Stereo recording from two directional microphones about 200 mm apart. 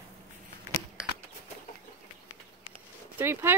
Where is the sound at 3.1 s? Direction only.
10° right (ahead or behind).